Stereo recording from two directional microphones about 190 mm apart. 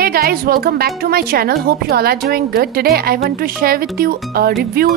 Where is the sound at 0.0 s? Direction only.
55° right (ahead or behind).